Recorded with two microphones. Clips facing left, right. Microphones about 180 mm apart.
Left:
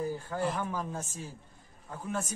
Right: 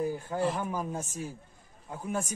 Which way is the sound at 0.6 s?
15° right (ahead or behind).